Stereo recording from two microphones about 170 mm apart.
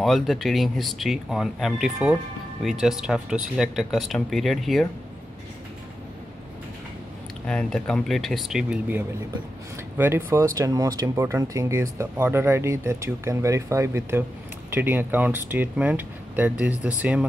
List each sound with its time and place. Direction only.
0.0 s speech: centre (ahead or behind)
7.4 s speech: 5° left (ahead or behind)